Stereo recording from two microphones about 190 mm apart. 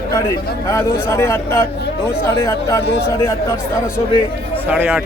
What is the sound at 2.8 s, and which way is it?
Speech, 60° left (ahead or behind).